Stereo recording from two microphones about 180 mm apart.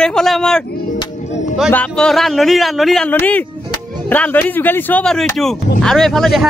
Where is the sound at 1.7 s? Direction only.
5° left (ahead or behind).